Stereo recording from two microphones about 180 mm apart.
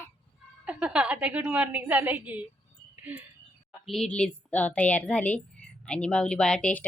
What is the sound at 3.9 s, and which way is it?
A woman's voice, 5° left (ahead or behind).